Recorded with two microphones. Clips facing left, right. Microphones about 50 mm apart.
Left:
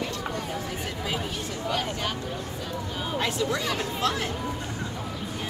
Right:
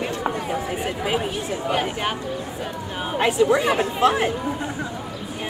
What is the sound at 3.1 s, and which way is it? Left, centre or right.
Speech, right.